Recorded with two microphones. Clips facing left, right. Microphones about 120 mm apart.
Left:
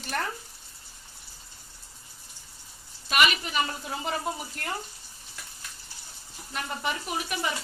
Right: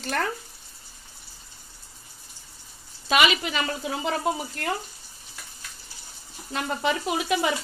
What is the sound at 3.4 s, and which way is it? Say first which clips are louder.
Speech: right 2 dB; 80° right.